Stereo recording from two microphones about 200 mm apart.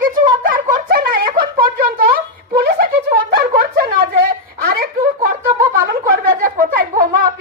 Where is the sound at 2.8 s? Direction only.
50° right (ahead or behind).